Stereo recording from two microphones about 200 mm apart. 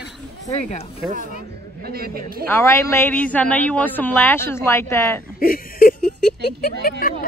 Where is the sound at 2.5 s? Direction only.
15° left (ahead or behind).